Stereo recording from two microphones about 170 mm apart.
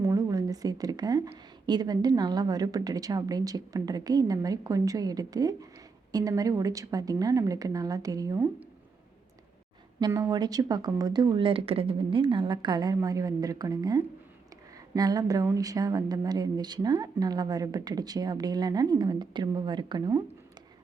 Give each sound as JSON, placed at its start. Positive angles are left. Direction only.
{"t": 0.0, "sound": "a woman's voice", "side_deg": -20}
{"t": 10.0, "sound": "a woman's voice", "side_deg": -15}